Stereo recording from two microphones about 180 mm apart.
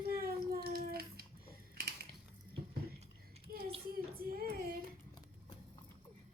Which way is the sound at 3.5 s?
55° right (ahead or behind).